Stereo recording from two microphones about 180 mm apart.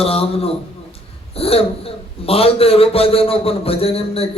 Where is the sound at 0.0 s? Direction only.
35° left (ahead or behind).